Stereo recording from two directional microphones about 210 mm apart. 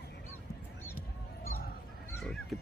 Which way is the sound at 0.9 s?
45° left (ahead or behind).